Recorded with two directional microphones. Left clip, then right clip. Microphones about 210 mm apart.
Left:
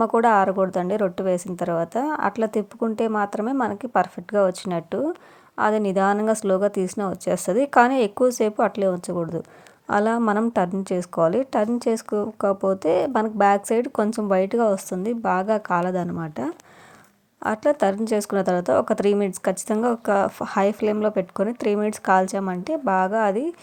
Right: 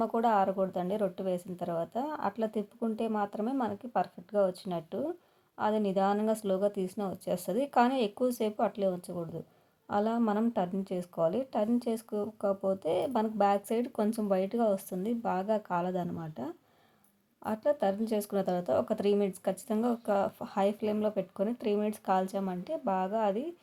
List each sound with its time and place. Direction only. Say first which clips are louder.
0.0 s speech: left 10 dB; 25° left (ahead or behind)